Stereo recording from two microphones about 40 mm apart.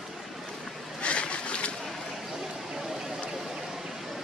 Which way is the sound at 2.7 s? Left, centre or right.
Centre.